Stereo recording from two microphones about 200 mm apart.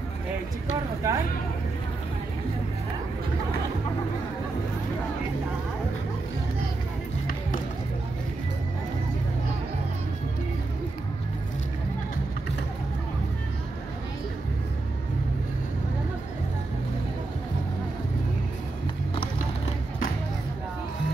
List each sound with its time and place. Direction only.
1.0 s speech: 15° right (ahead or behind)